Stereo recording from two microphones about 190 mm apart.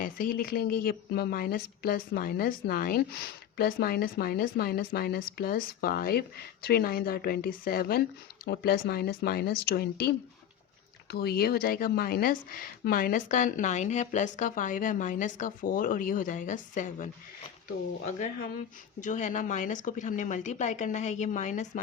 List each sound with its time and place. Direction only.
0.0 s speech: 45° left (ahead or behind)